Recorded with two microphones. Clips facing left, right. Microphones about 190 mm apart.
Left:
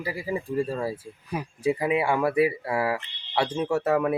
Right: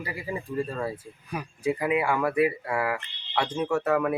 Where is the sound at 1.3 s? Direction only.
25° left (ahead or behind).